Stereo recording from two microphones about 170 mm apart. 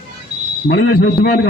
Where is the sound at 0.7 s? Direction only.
75° left (ahead or behind).